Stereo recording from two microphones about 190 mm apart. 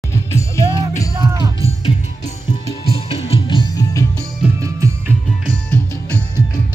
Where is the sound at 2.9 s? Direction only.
30° left (ahead or behind).